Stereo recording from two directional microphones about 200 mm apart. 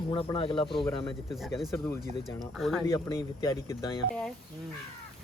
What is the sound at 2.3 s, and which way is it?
Speech, centre (ahead or behind).